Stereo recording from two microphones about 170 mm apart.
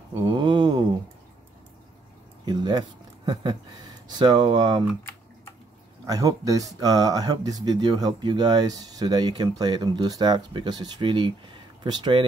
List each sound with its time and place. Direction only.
0.1 s a sound: 25° right (ahead or behind)
2.4 s speech: 25° right (ahead or behind)
4.1 s speech: 25° right (ahead or behind)
6.0 s speech: 20° right (ahead or behind)